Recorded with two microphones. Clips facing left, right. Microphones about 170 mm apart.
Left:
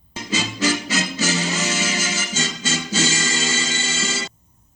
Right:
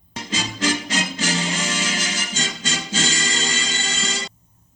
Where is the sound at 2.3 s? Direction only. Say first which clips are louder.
Left 3 dB; 45° left (ahead or behind).